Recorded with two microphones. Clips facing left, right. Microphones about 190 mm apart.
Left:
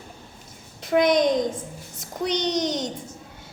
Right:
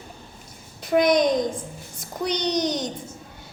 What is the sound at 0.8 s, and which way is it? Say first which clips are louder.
A child's voice: even; 25° left (ahead or behind).